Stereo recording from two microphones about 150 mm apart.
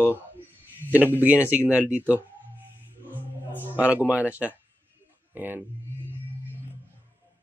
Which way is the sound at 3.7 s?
10° right (ahead or behind).